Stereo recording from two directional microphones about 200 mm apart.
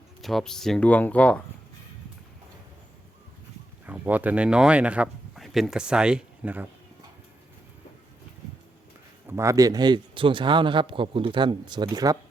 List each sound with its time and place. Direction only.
0.2 s speech: centre (ahead or behind)
3.8 s speech: 10° right (ahead or behind)
9.2 s a man's voice: 15° right (ahead or behind)